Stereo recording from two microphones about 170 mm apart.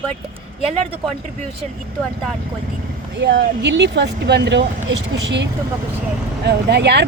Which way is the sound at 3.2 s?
90° right.